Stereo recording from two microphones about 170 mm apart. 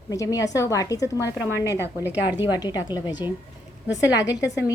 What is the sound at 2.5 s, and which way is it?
Speech, 25° left (ahead or behind).